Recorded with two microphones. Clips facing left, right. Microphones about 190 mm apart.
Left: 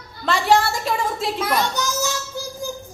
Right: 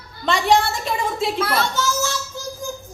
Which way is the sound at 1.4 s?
15° left (ahead or behind).